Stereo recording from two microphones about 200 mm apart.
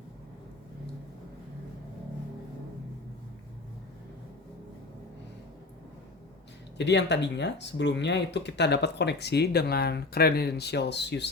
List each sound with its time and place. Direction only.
6.7 s speech: 60° left (ahead or behind)